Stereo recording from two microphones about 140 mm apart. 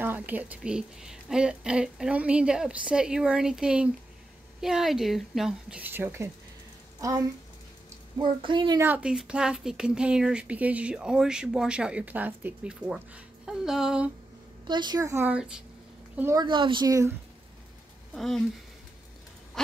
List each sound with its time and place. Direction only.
0.0 s a woman's voice: 15° right (ahead or behind)
8.2 s speech: 35° right (ahead or behind)
8.7 s speech: 15° right (ahead or behind)
14.7 s a woman's voice: 30° right (ahead or behind); by 15.6 s 5° right (ahead or behind)
16.3 s speech: 35° right (ahead or behind)
18.1 s speech: centre (ahead or behind)